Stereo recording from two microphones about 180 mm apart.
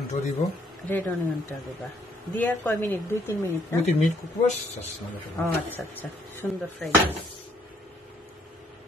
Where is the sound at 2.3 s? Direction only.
10° left (ahead or behind).